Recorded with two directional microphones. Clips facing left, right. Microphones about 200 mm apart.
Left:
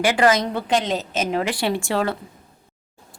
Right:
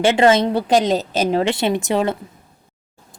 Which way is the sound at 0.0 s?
25° right (ahead or behind).